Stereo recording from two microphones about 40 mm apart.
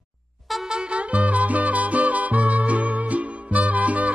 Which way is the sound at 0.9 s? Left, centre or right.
Right.